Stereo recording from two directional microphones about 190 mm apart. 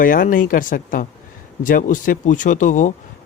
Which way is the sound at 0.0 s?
45° left (ahead or behind).